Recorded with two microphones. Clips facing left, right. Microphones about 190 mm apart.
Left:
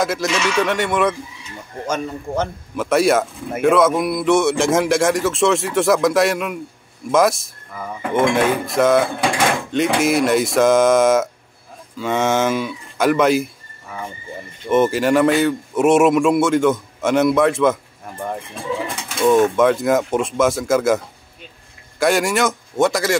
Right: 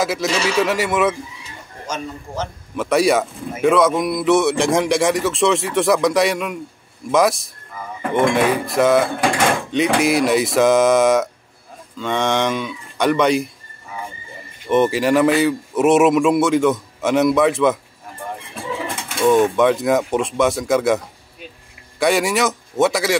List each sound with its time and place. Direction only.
0.0 s speech: centre (ahead or behind)
0.3 s speech: 35° right (ahead or behind)
0.6 s speech: 5° right (ahead or behind)
1.9 s a man's voice: 55° left (ahead or behind)
2.7 s speech: centre (ahead or behind)
14.7 s speech: centre (ahead or behind)
19.2 s speech: centre (ahead or behind)
22.0 s speech: centre (ahead or behind)